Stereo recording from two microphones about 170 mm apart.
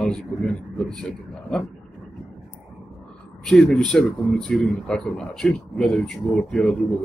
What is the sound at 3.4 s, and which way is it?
A man's voice, 5° left (ahead or behind).